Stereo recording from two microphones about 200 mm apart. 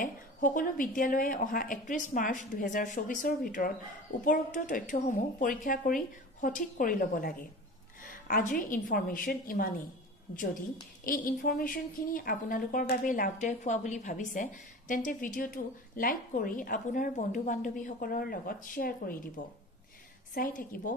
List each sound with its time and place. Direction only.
0.0 s a woman's voice: 40° left (ahead or behind)
11.1 s a woman's voice: 45° left (ahead or behind)